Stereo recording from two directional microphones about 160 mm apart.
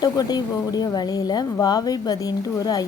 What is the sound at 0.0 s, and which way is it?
A woman's voice, 25° left (ahead or behind).